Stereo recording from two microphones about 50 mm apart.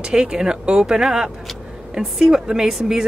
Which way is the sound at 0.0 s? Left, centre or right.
Centre.